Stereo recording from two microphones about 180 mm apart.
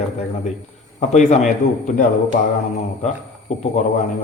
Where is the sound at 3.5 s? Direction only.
40° left (ahead or behind).